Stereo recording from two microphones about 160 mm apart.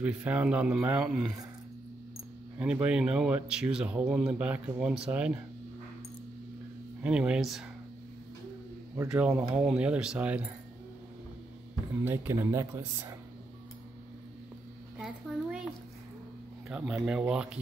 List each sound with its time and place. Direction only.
0.0 s speech: 10° right (ahead or behind)
2.6 s speech: 5° right (ahead or behind)
7.0 s speech: 5° right (ahead or behind)
9.1 s speech: 5° right (ahead or behind)
12.0 s speech: 15° right (ahead or behind)
15.0 s a sound: 5° right (ahead or behind)
16.6 s speech: 5° right (ahead or behind)